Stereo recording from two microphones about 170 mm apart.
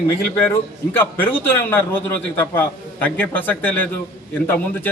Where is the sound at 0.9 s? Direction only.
10° left (ahead or behind).